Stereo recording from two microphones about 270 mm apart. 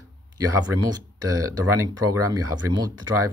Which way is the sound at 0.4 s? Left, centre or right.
Centre.